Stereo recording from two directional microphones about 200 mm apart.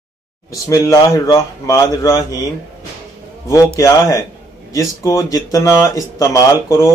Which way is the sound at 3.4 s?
15° left (ahead or behind).